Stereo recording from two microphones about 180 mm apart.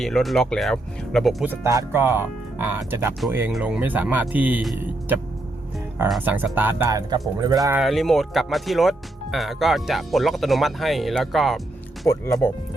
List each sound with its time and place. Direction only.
0.0 s speech: centre (ahead or behind)
1.5 s speech: 15° right (ahead or behind)
6.2 s speech: 10° right (ahead or behind)
7.8 s speech: centre (ahead or behind)
12.0 s speech: 15° left (ahead or behind)